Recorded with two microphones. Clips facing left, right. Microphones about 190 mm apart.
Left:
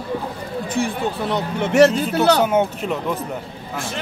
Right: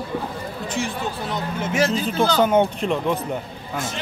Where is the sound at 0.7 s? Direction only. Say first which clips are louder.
Left 5 dB; 60° left (ahead or behind).